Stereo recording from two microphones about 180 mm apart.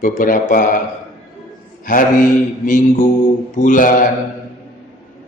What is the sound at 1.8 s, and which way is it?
Speech, 50° left (ahead or behind).